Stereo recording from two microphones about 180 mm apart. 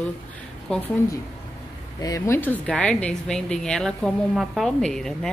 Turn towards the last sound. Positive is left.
turn(degrees=5)  # may be behind; listen again after turning